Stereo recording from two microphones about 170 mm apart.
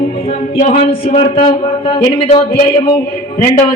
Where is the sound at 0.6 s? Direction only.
35° left (ahead or behind).